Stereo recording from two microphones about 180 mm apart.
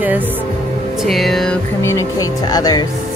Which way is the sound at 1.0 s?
Centre (ahead or behind).